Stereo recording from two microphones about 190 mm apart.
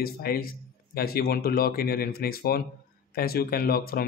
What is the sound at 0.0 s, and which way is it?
Speech, 50° left (ahead or behind).